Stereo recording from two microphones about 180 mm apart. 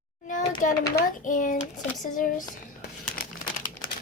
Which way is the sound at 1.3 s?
45° left (ahead or behind).